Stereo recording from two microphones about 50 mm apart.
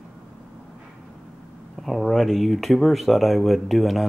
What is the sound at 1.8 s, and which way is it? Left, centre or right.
Speech, centre.